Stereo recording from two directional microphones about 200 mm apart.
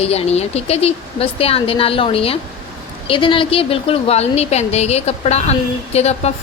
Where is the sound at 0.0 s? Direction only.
30° left (ahead or behind).